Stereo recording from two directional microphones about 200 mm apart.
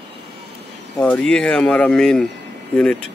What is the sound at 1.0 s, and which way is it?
Speech, 5° left (ahead or behind).